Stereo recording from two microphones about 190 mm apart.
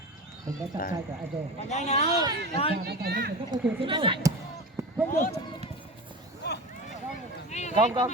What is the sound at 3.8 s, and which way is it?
Speech, 25° right (ahead or behind).